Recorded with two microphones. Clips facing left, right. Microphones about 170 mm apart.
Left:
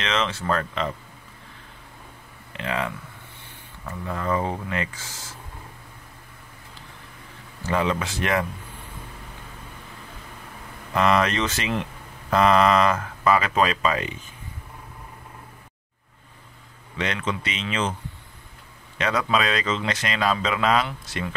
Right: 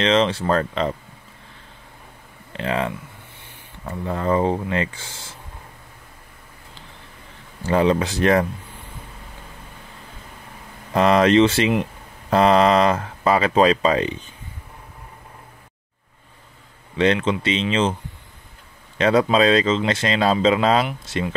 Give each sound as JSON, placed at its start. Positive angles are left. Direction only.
{"t": 0.0, "sound": "speech", "side_deg": -30}
{"t": 2.5, "sound": "speech", "side_deg": -35}
{"t": 7.6, "sound": "speech", "side_deg": -35}
{"t": 11.0, "sound": "speech", "side_deg": -30}
{"t": 16.9, "sound": "speech", "side_deg": -30}
{"t": 18.9, "sound": "speech", "side_deg": -30}